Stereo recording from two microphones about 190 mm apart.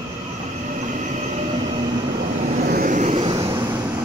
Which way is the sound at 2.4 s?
45° right (ahead or behind).